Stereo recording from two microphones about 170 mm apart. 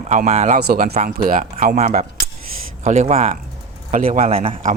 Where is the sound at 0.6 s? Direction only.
65° right (ahead or behind).